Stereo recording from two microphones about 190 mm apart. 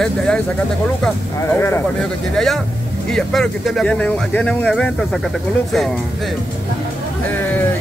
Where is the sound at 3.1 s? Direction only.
Centre (ahead or behind).